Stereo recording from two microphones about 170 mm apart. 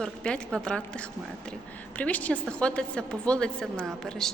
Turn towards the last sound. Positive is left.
turn(degrees=0)  # may be behind; listen again after turning